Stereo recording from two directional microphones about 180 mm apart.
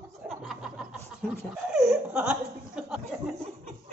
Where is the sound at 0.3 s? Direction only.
Centre (ahead or behind).